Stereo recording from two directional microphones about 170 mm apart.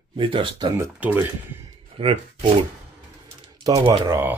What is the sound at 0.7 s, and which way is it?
Speech, 10° right (ahead or behind).